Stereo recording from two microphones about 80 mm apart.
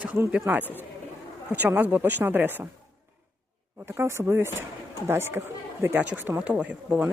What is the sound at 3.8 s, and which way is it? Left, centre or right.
Speech, right.